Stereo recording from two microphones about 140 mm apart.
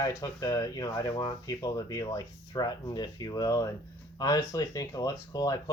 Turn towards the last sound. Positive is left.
turn(degrees=25)  # may be behind; listen again after turning